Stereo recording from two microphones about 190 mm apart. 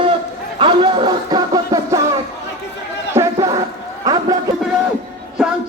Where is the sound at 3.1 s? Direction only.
15° right (ahead or behind).